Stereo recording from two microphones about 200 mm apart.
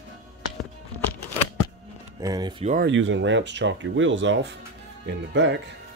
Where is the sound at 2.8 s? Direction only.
70° right (ahead or behind).